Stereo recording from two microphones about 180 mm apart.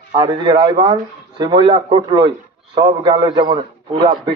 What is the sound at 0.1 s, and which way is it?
A man's voice, 25° right (ahead or behind).